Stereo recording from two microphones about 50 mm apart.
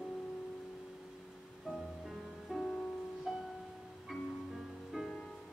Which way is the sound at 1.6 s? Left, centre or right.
Centre.